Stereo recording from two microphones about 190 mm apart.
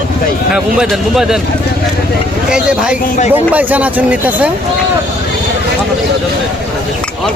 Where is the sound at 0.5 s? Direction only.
5° right (ahead or behind).